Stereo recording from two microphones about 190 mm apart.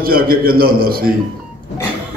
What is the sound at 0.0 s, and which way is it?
A man's voice, 50° right (ahead or behind).